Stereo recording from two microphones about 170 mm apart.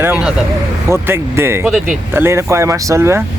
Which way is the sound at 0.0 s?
10° right (ahead or behind).